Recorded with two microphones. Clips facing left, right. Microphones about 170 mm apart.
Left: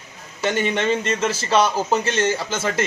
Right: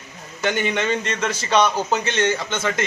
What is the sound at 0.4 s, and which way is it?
A man's voice, centre (ahead or behind).